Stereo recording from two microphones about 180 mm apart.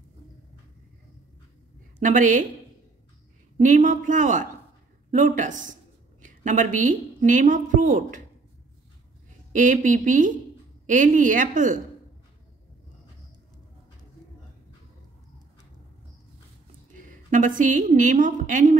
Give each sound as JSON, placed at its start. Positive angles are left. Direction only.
{"t": 2.0, "sound": "a woman's voice", "side_deg": -45}
{"t": 3.5, "sound": "a woman's voice", "side_deg": -45}
{"t": 9.5, "sound": "a woman's voice", "side_deg": -45}
{"t": 16.9, "sound": "a woman's voice", "side_deg": -45}